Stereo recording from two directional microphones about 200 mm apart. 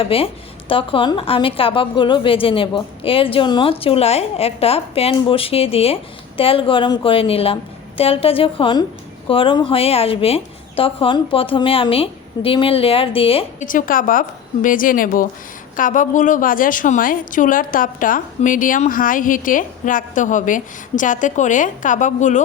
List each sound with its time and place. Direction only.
0.0 s a woman's voice: 30° left (ahead or behind)
13.7 s a woman's voice: 45° left (ahead or behind)